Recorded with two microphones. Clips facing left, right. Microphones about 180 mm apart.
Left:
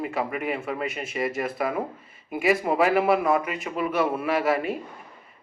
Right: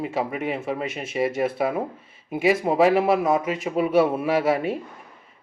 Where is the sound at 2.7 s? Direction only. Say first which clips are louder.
Right 3 dB; 30° right (ahead or behind).